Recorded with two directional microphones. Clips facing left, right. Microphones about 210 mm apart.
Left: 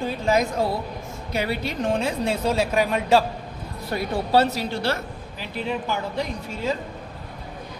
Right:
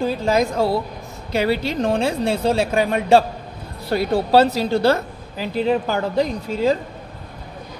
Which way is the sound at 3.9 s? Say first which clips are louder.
Right 5 dB; 85° right.